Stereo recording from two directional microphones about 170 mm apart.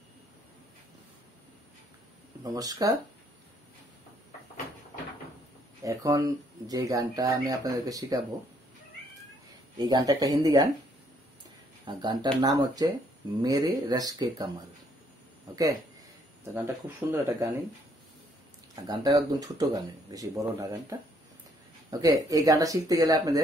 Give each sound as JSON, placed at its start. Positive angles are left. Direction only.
{"t": 2.4, "sound": "speech", "side_deg": -20}
{"t": 5.9, "sound": "speech", "side_deg": -20}
{"t": 9.8, "sound": "speech", "side_deg": -25}
{"t": 11.8, "sound": "speech", "side_deg": -25}
{"t": 16.5, "sound": "speech", "side_deg": -15}
{"t": 18.9, "sound": "speech", "side_deg": -25}
{"t": 21.9, "sound": "speech", "side_deg": -20}